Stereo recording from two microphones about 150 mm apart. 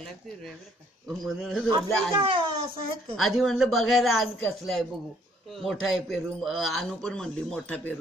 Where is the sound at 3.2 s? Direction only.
Centre (ahead or behind).